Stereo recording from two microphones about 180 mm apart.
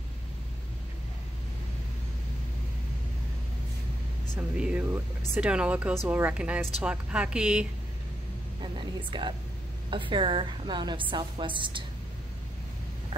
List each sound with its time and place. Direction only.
4.4 s a woman's voice: 5° right (ahead or behind)
8.7 s a sound: 25° right (ahead or behind)
9.8 s a woman's voice: 30° right (ahead or behind)